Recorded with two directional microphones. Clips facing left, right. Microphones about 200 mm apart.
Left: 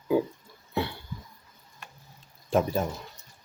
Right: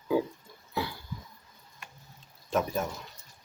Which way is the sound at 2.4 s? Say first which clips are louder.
Left 4 dB; 30° left (ahead or behind).